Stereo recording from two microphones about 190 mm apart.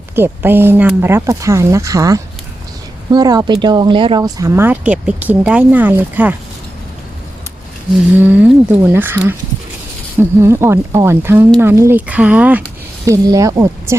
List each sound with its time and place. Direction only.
0.2 s speech: 10° right (ahead or behind)
8.2 s speech: 10° right (ahead or behind)